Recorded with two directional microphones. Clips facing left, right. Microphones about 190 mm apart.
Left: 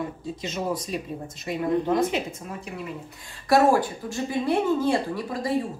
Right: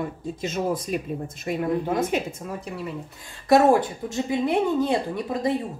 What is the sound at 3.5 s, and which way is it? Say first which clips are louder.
Speech: right 2 dB; 20° right (ahead or behind).